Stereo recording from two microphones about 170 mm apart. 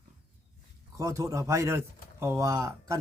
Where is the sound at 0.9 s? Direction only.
20° right (ahead or behind).